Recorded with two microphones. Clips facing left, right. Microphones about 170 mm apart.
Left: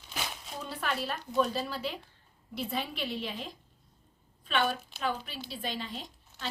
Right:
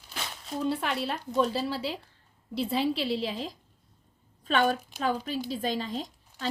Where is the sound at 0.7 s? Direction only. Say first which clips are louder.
Right 1 dB; 25° right (ahead or behind).